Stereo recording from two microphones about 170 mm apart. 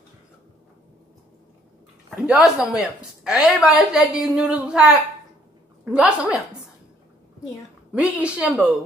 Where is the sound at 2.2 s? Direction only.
5° right (ahead or behind).